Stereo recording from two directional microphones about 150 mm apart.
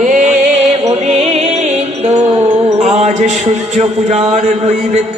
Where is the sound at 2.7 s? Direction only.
45° right (ahead or behind).